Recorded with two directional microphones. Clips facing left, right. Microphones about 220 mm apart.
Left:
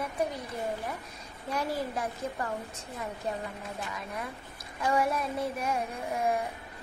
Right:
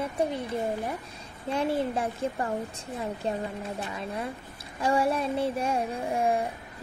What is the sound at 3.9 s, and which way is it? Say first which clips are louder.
A woman's voice: right 5 dB; 30° right (ahead or behind).